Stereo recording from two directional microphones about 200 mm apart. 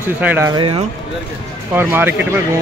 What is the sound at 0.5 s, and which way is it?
Speech, 25° right (ahead or behind).